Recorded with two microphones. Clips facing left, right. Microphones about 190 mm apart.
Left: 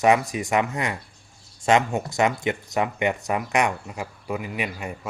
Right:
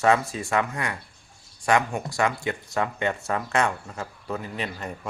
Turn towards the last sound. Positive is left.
turn(degrees=10)  # may be behind; listen again after turning